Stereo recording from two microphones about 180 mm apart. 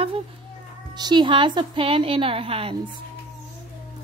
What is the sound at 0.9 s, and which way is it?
A woman's voice, 25° right (ahead or behind).